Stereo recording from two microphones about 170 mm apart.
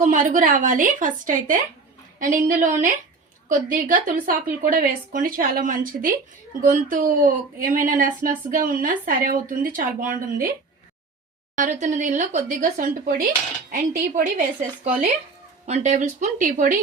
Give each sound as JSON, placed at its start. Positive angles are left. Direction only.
{"t": 0.0, "sound": "speech", "side_deg": -50}
{"t": 11.5, "sound": "speech", "side_deg": -45}
{"t": 15.6, "sound": "speech", "side_deg": -45}